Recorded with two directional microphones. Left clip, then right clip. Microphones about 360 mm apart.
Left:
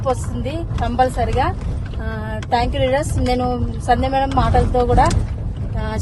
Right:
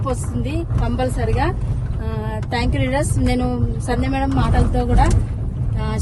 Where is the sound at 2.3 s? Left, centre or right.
Centre.